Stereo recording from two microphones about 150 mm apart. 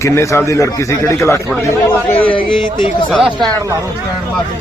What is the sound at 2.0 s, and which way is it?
Speech, 40° left (ahead or behind).